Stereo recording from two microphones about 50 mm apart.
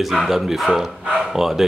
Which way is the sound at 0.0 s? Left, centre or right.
Centre.